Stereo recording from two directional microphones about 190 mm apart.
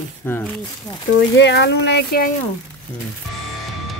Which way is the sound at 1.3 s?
65° left (ahead or behind).